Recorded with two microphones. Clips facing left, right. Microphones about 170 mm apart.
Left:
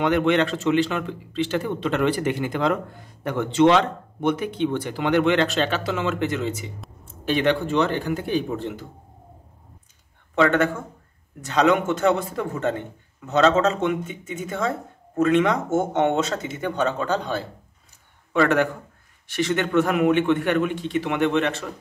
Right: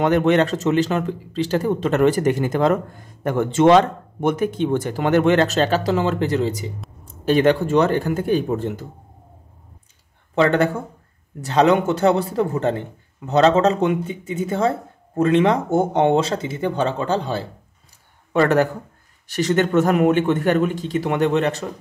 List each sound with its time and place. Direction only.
0.0 s a man's voice: 40° right (ahead or behind)
10.3 s a man's voice: 35° right (ahead or behind)
18.3 s a man's voice: 40° right (ahead or behind)